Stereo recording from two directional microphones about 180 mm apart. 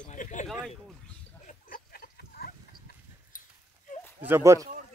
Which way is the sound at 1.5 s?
50° left (ahead or behind).